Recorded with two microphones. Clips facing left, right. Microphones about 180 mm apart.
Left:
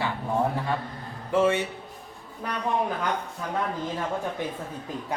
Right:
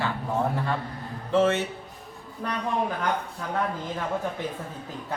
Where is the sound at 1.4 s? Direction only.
15° left (ahead or behind).